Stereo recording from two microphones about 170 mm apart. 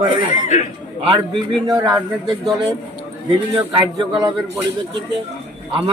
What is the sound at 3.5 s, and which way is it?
Speech, 30° right (ahead or behind).